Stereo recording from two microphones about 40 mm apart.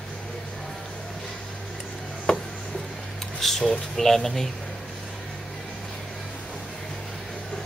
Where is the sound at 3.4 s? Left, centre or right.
Centre.